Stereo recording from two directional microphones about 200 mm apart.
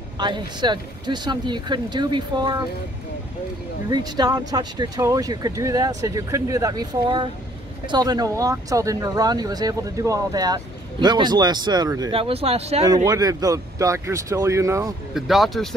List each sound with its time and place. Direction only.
0.2 s speech: 20° right (ahead or behind)
3.9 s speech: 20° right (ahead or behind)
12.8 s speech: 20° right (ahead or behind)
15.1 s speech: centre (ahead or behind)